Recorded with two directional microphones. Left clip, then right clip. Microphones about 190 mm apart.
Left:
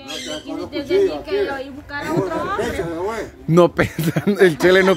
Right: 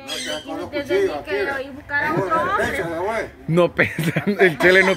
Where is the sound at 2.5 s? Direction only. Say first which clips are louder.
Right 1 dB; 10° right (ahead or behind).